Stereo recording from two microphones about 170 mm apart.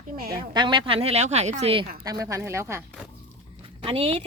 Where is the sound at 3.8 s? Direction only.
30° right (ahead or behind).